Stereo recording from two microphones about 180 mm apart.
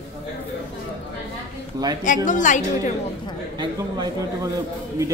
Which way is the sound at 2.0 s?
45° left (ahead or behind).